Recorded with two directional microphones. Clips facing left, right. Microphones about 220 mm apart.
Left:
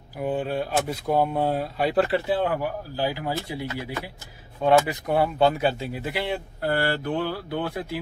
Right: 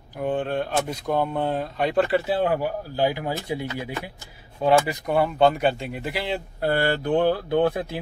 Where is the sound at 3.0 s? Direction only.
20° right (ahead or behind).